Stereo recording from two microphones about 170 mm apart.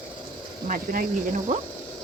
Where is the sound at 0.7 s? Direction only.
55° right (ahead or behind).